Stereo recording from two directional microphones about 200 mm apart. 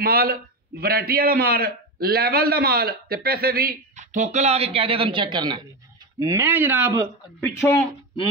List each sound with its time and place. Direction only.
0.0 s a man's voice: 50° right (ahead or behind); by 6.9 s 10° right (ahead or behind)
7.3 s speech: 10° left (ahead or behind)